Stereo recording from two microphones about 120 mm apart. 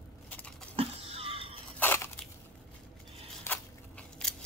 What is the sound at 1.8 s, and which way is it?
Crushing, 20° left (ahead or behind).